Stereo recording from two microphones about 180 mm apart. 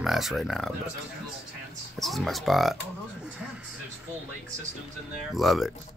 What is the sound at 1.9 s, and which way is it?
Speech, centre (ahead or behind).